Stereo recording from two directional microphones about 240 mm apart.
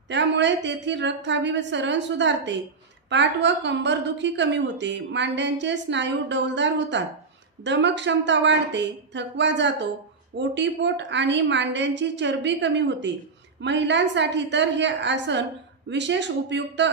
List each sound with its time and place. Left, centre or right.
0.1 s a woman's voice: right